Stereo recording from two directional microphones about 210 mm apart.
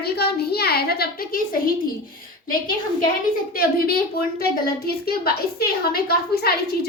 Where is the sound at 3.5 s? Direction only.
45° left (ahead or behind).